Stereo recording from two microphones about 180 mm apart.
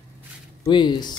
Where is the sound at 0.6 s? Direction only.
25° left (ahead or behind).